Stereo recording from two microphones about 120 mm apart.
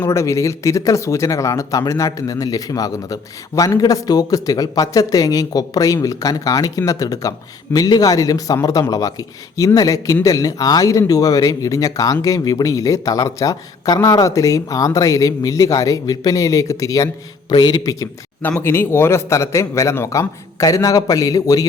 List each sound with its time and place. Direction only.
0.0 s a man's voice: 25° left (ahead or behind)
18.4 s speech: 15° left (ahead or behind)